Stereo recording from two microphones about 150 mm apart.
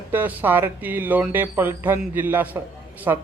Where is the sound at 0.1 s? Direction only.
15° right (ahead or behind).